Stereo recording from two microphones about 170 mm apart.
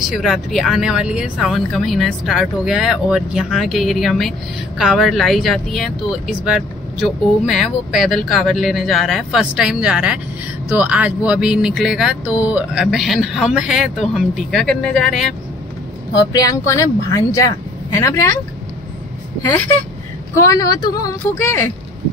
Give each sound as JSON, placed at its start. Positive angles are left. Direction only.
{"t": 0.0, "sound": "speech", "side_deg": 0}
{"t": 16.3, "sound": "speech", "side_deg": 20}
{"t": 20.3, "sound": "speech", "side_deg": 20}